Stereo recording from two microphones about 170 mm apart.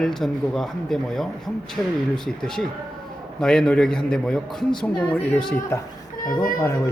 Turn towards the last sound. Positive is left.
turn(degrees=15)  # may be behind; listen again after turning